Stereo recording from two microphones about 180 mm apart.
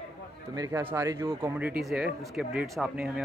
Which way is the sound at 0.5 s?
15° right (ahead or behind).